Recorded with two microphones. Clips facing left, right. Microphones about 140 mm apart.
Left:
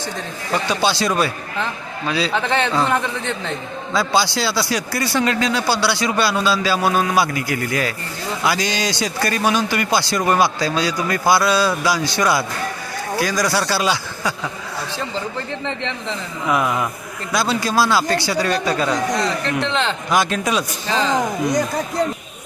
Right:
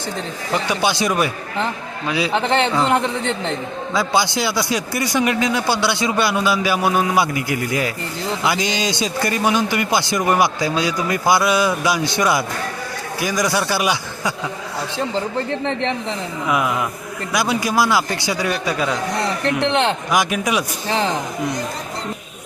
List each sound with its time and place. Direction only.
0.5 s a man's voice: 15° right (ahead or behind)
15.9 s a man's voice: 15° right (ahead or behind)